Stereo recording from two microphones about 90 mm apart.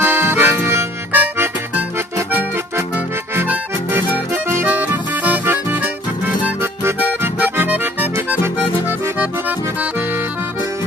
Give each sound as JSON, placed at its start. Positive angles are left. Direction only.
{"t": 0.0, "sound": "accordion", "side_deg": -25}
{"t": 4.7, "sound": "music", "side_deg": -20}
{"t": 8.3, "sound": "accordion", "side_deg": -20}